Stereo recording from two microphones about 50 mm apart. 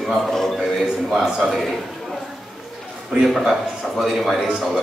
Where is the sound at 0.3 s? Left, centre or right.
Centre.